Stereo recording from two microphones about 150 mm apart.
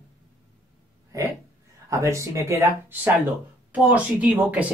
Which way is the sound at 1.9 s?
20° right (ahead or behind).